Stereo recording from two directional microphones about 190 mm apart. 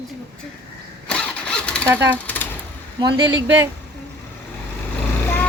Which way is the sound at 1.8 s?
10° right (ahead or behind).